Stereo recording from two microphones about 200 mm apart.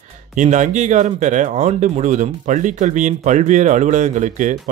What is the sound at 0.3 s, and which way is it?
Speech, 40° right (ahead or behind).